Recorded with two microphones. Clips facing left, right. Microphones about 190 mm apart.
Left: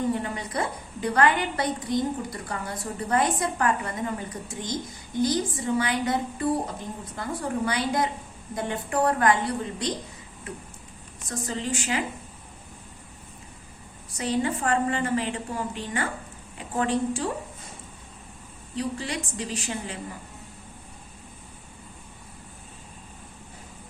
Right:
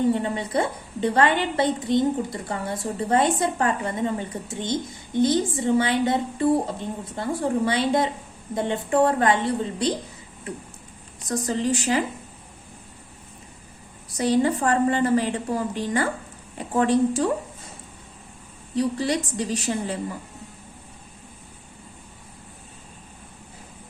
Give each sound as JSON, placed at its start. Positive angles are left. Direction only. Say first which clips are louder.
{"t": 0.1, "sound": "a woman's voice", "louder": "right 5 dB", "side_deg": -25}
{"t": 11.3, "sound": "a woman's voice", "louder": "right 6 dB", "side_deg": -40}
{"t": 14.1, "sound": "a woman's voice", "louder": "right 6 dB", "side_deg": -35}
{"t": 18.8, "sound": "a woman's voice", "louder": "right 7 dB", "side_deg": -35}